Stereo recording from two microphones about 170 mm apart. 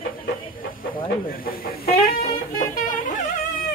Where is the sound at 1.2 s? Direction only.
60° left (ahead or behind).